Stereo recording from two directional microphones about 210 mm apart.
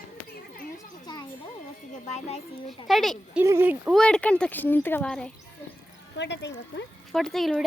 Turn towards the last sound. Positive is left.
turn(degrees=0)  # may be behind; listen again after turning